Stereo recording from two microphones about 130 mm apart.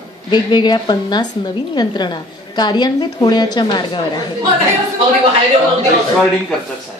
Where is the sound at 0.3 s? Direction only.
35° left (ahead or behind).